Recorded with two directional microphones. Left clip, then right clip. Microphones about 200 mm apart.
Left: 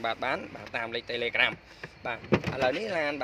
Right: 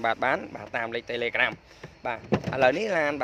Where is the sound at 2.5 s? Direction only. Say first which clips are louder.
Right 10 dB; 20° right (ahead or behind).